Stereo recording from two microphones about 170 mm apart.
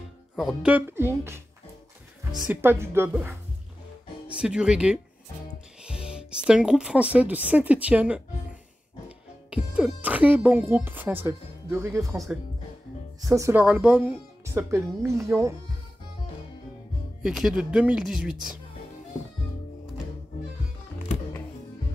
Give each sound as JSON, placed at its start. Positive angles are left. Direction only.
{"t": 0.4, "sound": "speech", "side_deg": -5}
{"t": 2.4, "sound": "speech", "side_deg": -10}
{"t": 4.4, "sound": "speech", "side_deg": -5}
{"t": 9.5, "sound": "speech", "side_deg": -5}
{"t": 13.3, "sound": "speech", "side_deg": -15}
{"t": 17.2, "sound": "speech", "side_deg": -5}